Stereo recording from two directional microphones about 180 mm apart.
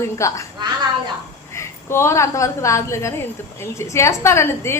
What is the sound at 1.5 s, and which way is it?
A woman's voice, 15° left (ahead or behind).